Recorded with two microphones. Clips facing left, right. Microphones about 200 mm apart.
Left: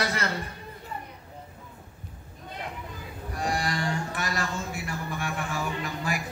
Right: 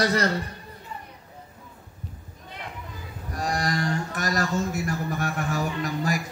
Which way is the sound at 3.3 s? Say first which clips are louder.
Right 2 dB; 40° right (ahead or behind).